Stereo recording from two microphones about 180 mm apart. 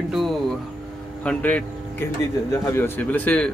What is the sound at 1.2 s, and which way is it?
A man's voice, 10° left (ahead or behind).